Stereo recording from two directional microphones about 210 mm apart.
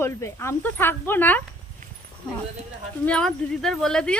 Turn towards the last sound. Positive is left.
turn(degrees=5)  # may be behind; listen again after turning